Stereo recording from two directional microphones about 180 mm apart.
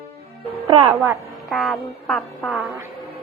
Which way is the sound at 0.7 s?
30° right (ahead or behind).